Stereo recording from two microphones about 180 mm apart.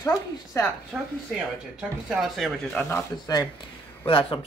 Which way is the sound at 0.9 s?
5° right (ahead or behind).